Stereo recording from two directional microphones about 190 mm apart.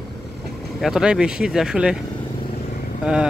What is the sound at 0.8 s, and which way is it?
Speech, 5° right (ahead or behind).